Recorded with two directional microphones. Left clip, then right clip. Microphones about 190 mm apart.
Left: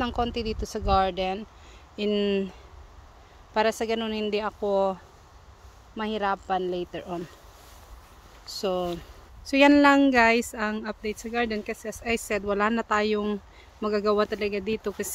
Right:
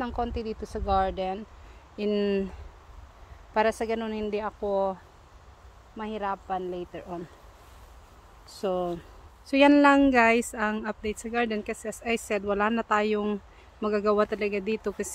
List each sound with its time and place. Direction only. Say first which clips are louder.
0.0 s a woman's voice: left 3 dB; 15° left (ahead or behind)
3.5 s a woman's voice: left 1 dB; 5° left (ahead or behind)
5.9 s speech: left 4 dB; 25° left (ahead or behind)
8.5 s speech: left 1 dB; centre (ahead or behind)